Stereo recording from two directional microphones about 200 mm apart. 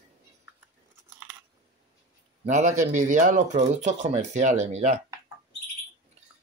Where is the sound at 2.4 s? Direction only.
35° right (ahead or behind).